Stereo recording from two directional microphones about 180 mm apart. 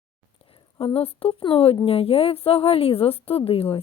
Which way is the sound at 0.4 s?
30° left (ahead or behind).